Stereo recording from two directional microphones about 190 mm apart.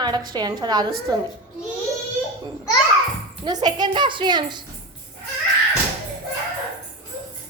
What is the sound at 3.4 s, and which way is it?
A woman's voice, 20° right (ahead or behind).